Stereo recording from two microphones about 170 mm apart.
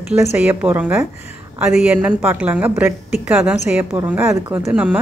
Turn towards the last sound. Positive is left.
turn(degrees=-5)  # may be behind; listen again after turning